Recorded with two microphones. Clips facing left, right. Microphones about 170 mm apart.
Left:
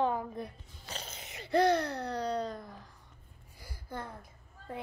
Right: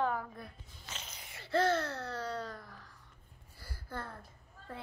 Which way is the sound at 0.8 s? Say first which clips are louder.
Left 5 dB; 35° left (ahead or behind).